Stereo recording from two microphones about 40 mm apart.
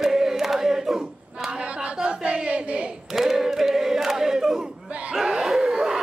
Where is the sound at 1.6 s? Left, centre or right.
Right.